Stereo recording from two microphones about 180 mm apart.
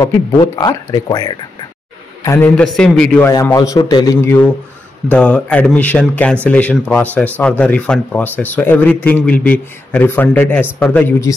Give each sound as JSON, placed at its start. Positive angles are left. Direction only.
{"t": 0.0, "sound": "speech", "side_deg": 20}
{"t": 2.2, "sound": "a man's voice", "side_deg": 10}
{"t": 3.3, "sound": "speech", "side_deg": 20}